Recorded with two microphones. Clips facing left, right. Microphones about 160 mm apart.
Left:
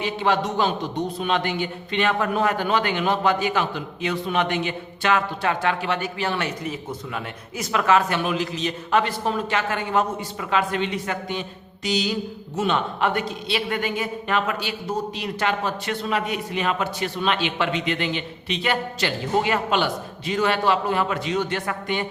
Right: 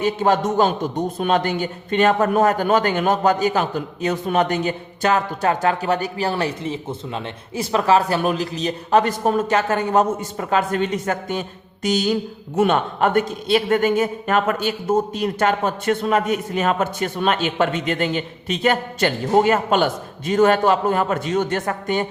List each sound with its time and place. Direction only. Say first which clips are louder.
0.0 s a man's voice: right 4 dB; 45° right (ahead or behind)